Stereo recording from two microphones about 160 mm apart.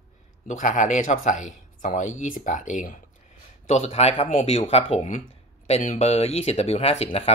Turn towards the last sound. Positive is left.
turn(degrees=40)  # may be behind; listen again after turning